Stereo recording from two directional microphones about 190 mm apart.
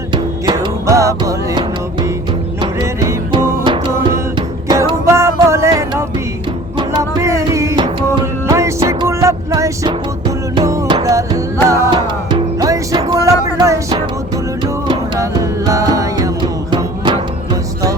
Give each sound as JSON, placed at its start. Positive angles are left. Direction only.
{"t": 0.1, "sound": "music", "side_deg": -25}